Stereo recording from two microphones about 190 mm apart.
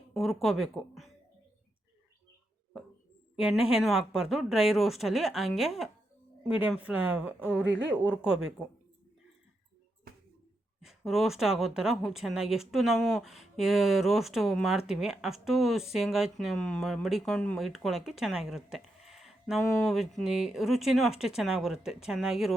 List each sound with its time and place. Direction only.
0.1 s speech: centre (ahead or behind)
3.3 s speech: 5° right (ahead or behind)
7.3 s speech: 10° left (ahead or behind)
7.6 s a woman's voice: 80° right
7.9 s speech: 10° right (ahead or behind)
10.8 s speech: centre (ahead or behind)